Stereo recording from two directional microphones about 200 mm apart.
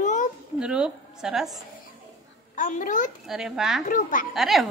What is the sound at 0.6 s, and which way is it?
Speech, 5° right (ahead or behind).